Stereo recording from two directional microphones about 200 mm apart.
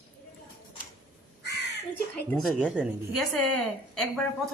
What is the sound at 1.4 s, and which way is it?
Crow, 60° left (ahead or behind).